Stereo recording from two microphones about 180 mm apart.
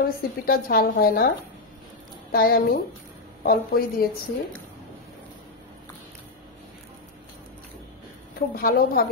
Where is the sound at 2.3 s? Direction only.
55° left (ahead or behind).